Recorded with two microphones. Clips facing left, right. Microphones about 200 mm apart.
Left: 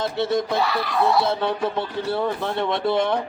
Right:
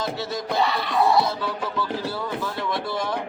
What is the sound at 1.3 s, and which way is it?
A man's voice, 60° left (ahead or behind).